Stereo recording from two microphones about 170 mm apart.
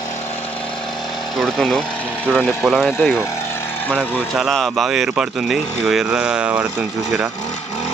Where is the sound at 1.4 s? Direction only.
5° left (ahead or behind).